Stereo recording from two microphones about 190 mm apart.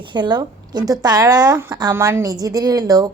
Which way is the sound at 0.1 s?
25° right (ahead or behind).